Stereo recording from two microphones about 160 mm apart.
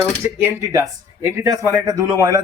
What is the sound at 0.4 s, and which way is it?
Speech, 15° right (ahead or behind).